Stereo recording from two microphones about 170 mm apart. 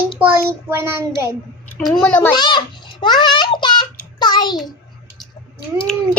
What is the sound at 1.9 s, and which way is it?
Speech, 10° left (ahead or behind).